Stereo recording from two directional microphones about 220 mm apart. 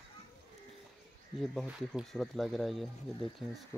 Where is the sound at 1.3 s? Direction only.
Centre (ahead or behind).